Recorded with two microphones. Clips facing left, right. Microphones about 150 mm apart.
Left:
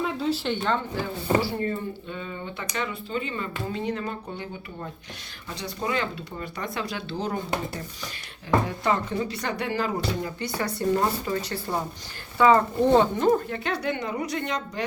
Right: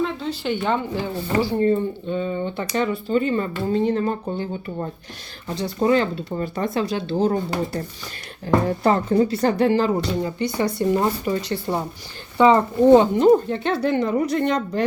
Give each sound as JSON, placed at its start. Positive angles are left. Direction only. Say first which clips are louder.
{"t": 0.0, "sound": "a sound", "louder": "right 2 dB", "side_deg": 5}
{"t": 0.6, "sound": "speech", "louder": "right 4 dB", "side_deg": -15}
{"t": 2.0, "sound": "speech", "louder": "right 10 dB", "side_deg": -30}
{"t": 8.6, "sound": "speech", "louder": "right 6 dB", "side_deg": -40}